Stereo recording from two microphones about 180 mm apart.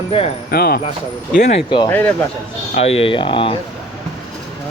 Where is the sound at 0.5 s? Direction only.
60° left (ahead or behind).